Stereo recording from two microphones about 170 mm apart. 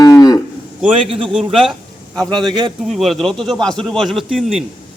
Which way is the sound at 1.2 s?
Centre (ahead or behind).